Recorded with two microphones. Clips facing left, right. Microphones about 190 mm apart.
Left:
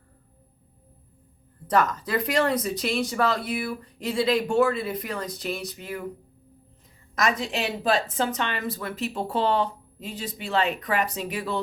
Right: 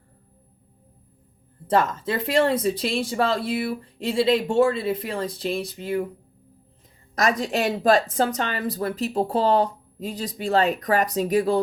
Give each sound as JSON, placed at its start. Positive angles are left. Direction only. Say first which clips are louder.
{"t": 1.6, "sound": "speech", "louder": "right 2 dB", "side_deg": -30}
{"t": 7.2, "sound": "speech", "louder": "right 3 dB", "side_deg": -40}